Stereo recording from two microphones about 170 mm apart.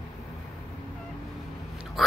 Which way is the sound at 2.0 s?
Centre (ahead or behind).